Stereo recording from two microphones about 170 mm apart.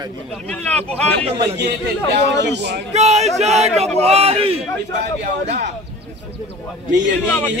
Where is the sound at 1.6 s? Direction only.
90° right.